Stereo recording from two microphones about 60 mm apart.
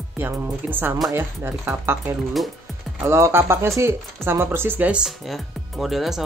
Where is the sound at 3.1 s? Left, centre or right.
Right.